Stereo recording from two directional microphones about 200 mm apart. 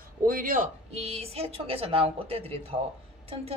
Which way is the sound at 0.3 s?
45° right (ahead or behind).